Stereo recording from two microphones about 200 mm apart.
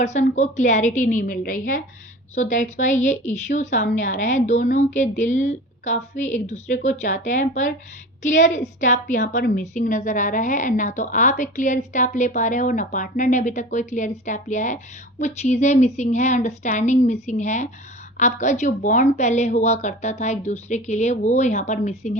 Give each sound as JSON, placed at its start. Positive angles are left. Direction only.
{"t": 0.0, "sound": "speech", "side_deg": 35}